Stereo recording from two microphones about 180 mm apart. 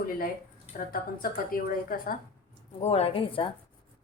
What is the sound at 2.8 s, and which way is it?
Speech, 35° left (ahead or behind).